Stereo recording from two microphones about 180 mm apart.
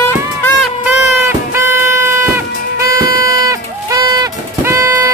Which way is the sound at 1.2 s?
15° right (ahead or behind).